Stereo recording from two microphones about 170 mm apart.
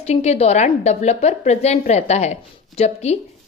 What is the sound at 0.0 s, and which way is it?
A woman's voice, 40° left (ahead or behind).